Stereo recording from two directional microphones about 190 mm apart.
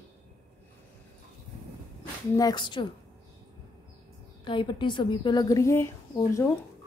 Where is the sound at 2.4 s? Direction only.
20° left (ahead or behind).